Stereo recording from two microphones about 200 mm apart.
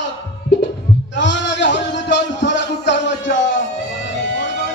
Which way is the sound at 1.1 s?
65° left (ahead or behind).